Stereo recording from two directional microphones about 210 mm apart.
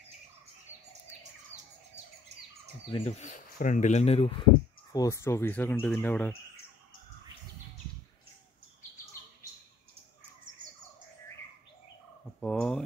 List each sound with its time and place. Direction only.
1.5 s bird: 30° right (ahead or behind)
2.9 s speech: 30° left (ahead or behind)
4.9 s speech: 15° left (ahead or behind)
12.4 s turkey: 5° left (ahead or behind)